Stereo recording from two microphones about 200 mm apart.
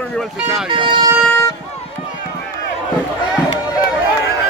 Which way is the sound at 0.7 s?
25° right (ahead or behind).